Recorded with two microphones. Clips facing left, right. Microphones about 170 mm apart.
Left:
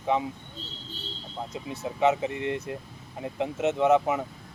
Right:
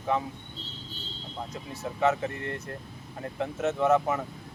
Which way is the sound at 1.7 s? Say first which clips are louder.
Left 2 dB; 15° left (ahead or behind).